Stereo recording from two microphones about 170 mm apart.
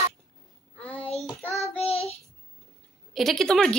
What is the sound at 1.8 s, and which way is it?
Child singing, 35° left (ahead or behind).